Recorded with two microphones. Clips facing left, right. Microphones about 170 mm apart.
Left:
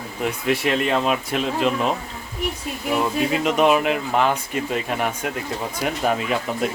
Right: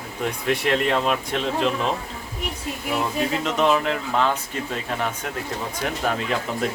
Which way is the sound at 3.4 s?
15° left (ahead or behind).